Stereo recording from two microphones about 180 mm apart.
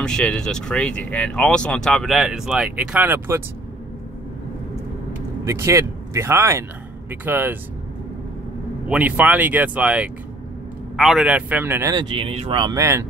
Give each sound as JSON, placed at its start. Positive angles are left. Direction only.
{"t": 0.0, "sound": "speech", "side_deg": 5}
{"t": 5.4, "sound": "speech", "side_deg": -15}
{"t": 8.8, "sound": "speech", "side_deg": -5}